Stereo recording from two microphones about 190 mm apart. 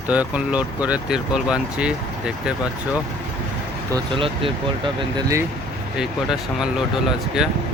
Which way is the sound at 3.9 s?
25° right (ahead or behind).